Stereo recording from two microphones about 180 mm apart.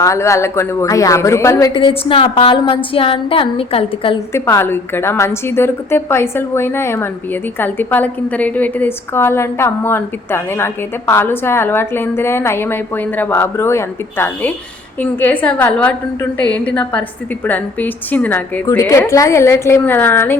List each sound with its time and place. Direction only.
0.0 s a woman's voice: 15° left (ahead or behind)
1.7 s a woman's voice: 30° left (ahead or behind)
4.4 s a woman's voice: 15° left (ahead or behind)